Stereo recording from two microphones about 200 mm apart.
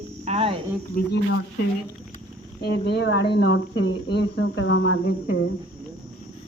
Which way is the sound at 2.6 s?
55° left (ahead or behind).